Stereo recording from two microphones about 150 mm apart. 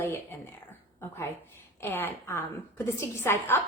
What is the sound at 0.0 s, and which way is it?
Speech, 15° left (ahead or behind).